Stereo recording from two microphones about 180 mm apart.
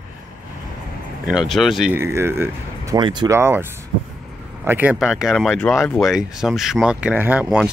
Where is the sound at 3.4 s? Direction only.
15° right (ahead or behind).